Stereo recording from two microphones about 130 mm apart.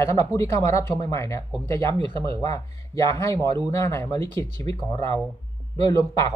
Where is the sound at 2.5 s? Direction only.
25° left (ahead or behind).